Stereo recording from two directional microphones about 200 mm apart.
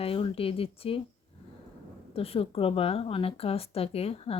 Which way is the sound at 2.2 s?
30° left (ahead or behind).